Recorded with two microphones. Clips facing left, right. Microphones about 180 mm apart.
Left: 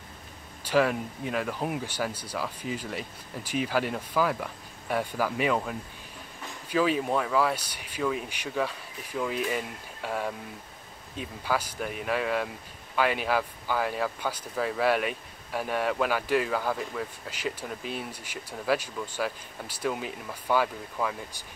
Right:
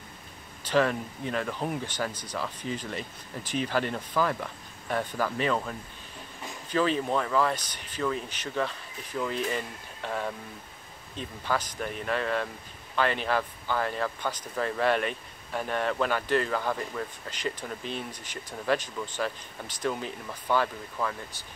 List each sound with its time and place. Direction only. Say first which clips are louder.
0.7 s speech: left 1 dB; 10° left (ahead or behind)